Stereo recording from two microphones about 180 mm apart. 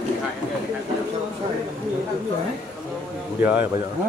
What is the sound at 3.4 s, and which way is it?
Speech, 10° right (ahead or behind).